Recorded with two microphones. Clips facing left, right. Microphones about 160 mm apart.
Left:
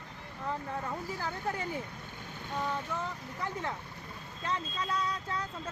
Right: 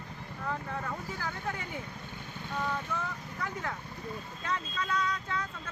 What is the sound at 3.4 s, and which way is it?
Speech, 30° left (ahead or behind).